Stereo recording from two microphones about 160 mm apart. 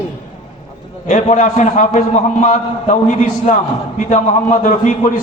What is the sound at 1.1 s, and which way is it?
A man's voice, 50° left (ahead or behind).